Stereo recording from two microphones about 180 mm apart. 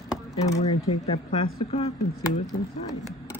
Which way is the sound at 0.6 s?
35° left (ahead or behind).